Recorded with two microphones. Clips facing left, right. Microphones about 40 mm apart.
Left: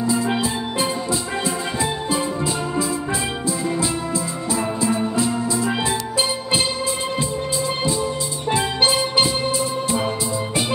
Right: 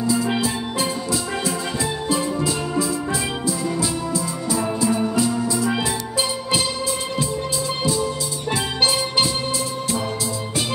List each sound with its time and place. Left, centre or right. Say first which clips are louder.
0.0 s music: even; left
7.8 s music: even; left